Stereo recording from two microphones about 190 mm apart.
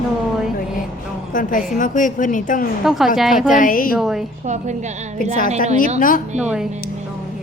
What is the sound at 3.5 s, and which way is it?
Speech, 45° left (ahead or behind).